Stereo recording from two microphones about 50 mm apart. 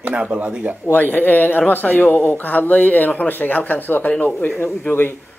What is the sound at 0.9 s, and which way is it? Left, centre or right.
Speech, left.